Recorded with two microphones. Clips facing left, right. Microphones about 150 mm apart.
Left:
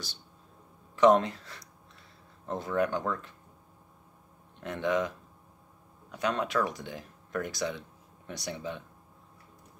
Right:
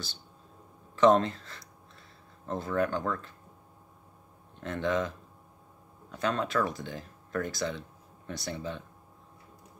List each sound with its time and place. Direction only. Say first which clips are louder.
0.9 s speech: even; 10° left (ahead or behind)
4.6 s speech: even; 15° left (ahead or behind)
6.1 s speech: even; 15° left (ahead or behind)